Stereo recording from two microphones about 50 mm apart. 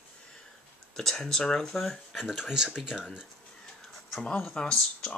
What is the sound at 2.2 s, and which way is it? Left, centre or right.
Speech, centre.